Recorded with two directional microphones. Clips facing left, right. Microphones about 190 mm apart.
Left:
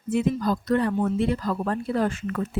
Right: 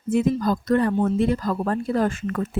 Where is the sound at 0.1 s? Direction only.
45° right (ahead or behind).